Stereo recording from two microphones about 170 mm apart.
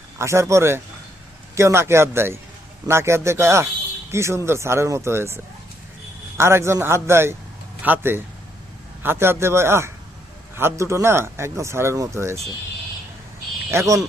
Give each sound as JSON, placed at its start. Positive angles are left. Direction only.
{"t": 0.2, "sound": "speech", "side_deg": -15}
{"t": 13.7, "sound": "speech", "side_deg": -15}